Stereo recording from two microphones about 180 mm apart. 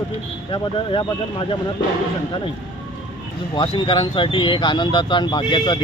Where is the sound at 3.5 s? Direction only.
25° left (ahead or behind).